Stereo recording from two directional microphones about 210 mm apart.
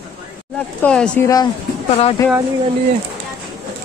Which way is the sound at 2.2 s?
15° left (ahead or behind).